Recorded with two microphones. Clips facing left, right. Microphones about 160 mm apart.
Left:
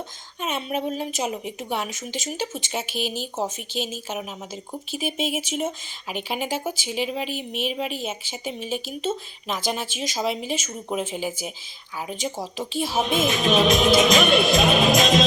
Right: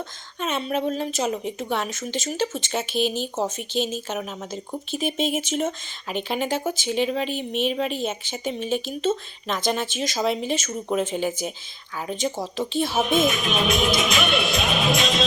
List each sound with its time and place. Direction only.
0.3 s speech: 10° left (ahead or behind)
12.9 s music: 35° left (ahead or behind)